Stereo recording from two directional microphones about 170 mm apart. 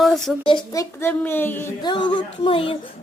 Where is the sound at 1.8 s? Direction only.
25° left (ahead or behind).